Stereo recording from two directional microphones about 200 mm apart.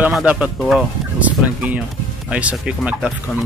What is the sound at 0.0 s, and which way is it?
Speech, 5° right (ahead or behind).